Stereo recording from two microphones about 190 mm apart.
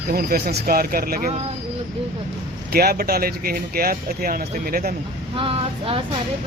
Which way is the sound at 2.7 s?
55° right (ahead or behind).